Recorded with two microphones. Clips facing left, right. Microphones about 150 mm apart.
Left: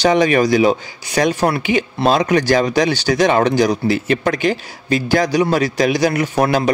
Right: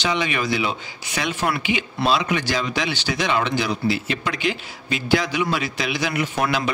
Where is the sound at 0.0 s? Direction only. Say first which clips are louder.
Left 10 dB; 45° left (ahead or behind).